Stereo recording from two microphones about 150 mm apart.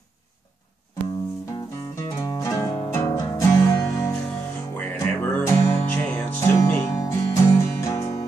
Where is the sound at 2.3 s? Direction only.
20° left (ahead or behind).